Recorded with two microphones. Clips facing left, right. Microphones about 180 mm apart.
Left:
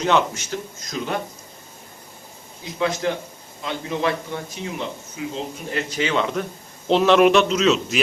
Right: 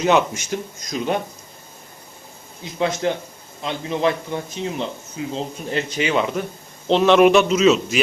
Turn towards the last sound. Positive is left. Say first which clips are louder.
# right 3 dB
turn(degrees=-5)  # may be behind; listen again after turning